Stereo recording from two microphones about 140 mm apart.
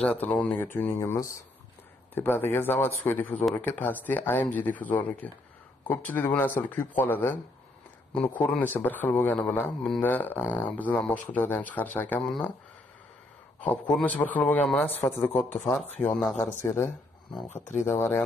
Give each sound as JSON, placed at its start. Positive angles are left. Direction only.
{"t": 0.0, "sound": "a man's voice", "side_deg": 10}
{"t": 8.4, "sound": "a man's voice", "side_deg": 10}
{"t": 13.6, "sound": "a man's voice", "side_deg": 10}
{"t": 16.4, "sound": "a man's voice", "side_deg": 20}
{"t": 17.5, "sound": "speech", "side_deg": 60}
{"t": 17.8, "sound": "a man's voice", "side_deg": 15}